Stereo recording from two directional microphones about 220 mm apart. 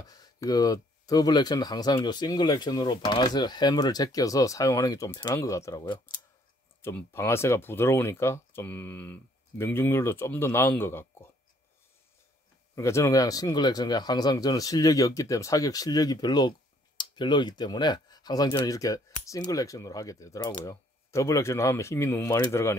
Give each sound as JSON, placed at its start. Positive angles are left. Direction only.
{"t": 0.0, "sound": "speech", "side_deg": 15}
{"t": 12.7, "sound": "speech", "side_deg": 15}